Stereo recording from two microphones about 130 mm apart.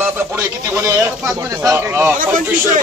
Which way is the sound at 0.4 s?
20° right (ahead or behind).